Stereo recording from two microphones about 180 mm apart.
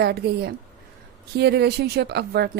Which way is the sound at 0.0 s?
60° right (ahead or behind).